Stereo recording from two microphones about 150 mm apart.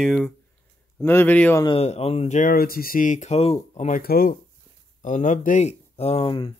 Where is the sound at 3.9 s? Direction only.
80° left.